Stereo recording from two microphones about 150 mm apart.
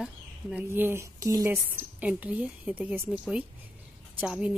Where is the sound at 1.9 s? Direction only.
10° right (ahead or behind).